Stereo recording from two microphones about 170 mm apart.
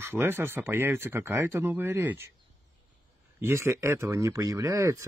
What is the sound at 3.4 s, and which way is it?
Speech, 15° right (ahead or behind).